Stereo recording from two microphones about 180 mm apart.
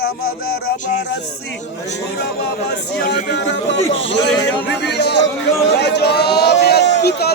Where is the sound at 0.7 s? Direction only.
45° left (ahead or behind).